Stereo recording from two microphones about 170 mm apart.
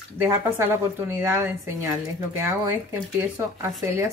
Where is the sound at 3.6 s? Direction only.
15° right (ahead or behind).